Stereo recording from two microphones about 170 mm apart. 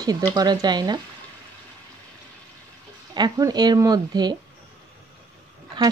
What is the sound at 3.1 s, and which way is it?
Speech, 25° right (ahead or behind).